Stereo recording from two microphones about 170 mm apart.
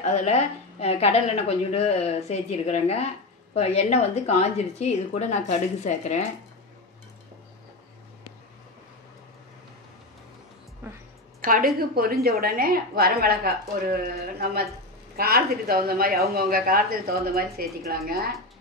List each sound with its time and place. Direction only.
0.0 s a woman's voice: 40° left (ahead or behind)
11.9 s speech: 60° right (ahead or behind)